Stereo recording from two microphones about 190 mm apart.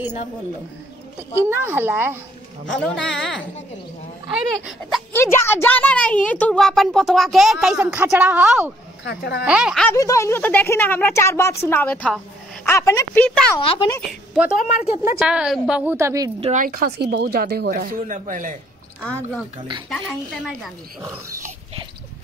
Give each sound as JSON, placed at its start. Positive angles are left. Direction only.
{"t": 1.3, "sound": "speech", "side_deg": -10}
{"t": 2.7, "sound": "a woman's voice", "side_deg": 5}
{"t": 4.6, "sound": "a woman's voice", "side_deg": 0}
{"t": 5.1, "sound": "a woman's voice", "side_deg": 10}
{"t": 9.0, "sound": "a woman's voice", "side_deg": 60}
{"t": 9.4, "sound": "a woman's voice", "side_deg": -5}
{"t": 9.8, "sound": "speech", "side_deg": 15}
{"t": 13.6, "sound": "speech", "side_deg": 30}
{"t": 14.3, "sound": "a woman's voice", "side_deg": -5}
{"t": 14.7, "sound": "a woman's voice", "side_deg": 40}
{"t": 15.1, "sound": "a woman's voice", "side_deg": -5}
{"t": 16.5, "sound": "speech", "side_deg": -50}
{"t": 19.9, "sound": "a woman's voice", "side_deg": 0}